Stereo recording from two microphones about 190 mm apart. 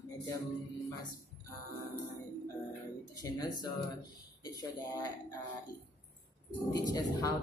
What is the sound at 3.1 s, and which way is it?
A woman's voice, 20° left (ahead or behind).